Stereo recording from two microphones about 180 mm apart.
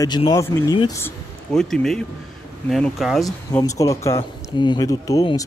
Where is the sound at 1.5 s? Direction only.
5° left (ahead or behind).